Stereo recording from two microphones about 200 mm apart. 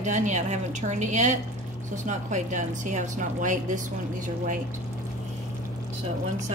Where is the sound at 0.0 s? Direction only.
35° right (ahead or behind).